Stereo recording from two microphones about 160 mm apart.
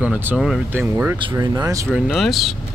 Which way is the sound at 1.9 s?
Centre (ahead or behind).